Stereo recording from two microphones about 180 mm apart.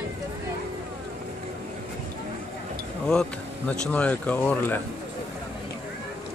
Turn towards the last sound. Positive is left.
turn(degrees=10)  # may be behind; listen again after turning